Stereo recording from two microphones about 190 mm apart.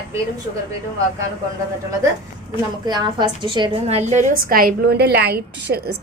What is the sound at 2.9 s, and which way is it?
A woman's voice, 20° right (ahead or behind).